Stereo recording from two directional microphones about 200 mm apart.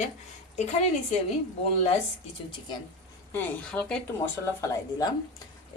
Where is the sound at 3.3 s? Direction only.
10° left (ahead or behind).